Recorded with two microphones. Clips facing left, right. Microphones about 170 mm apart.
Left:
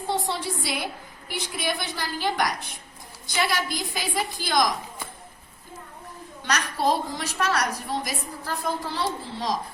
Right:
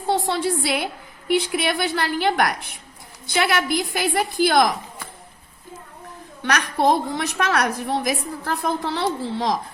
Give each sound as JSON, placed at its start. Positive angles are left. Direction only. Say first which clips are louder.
{"t": 0.1, "sound": "a woman's voice", "louder": "right 7 dB", "side_deg": -65}
{"t": 6.5, "sound": "a woman's voice", "louder": "right 5 dB", "side_deg": -70}